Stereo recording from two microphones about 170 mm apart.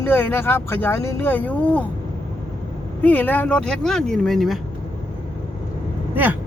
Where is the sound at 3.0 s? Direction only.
10° left (ahead or behind).